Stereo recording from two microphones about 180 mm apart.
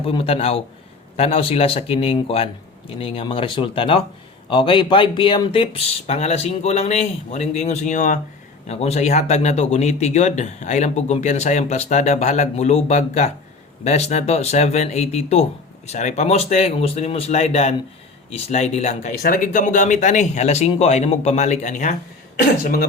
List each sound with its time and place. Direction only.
0.0 s speech: 30° left (ahead or behind); by 22.9 s 50° left (ahead or behind)